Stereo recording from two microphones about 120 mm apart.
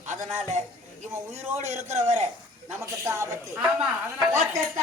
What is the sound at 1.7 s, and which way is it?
Speech, 70° right (ahead or behind).